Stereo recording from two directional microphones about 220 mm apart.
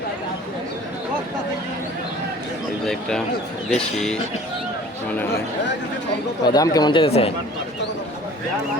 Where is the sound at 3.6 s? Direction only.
5° left (ahead or behind).